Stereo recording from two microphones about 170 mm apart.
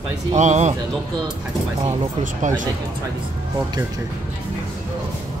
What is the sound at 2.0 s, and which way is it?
Speech, 45° right (ahead or behind).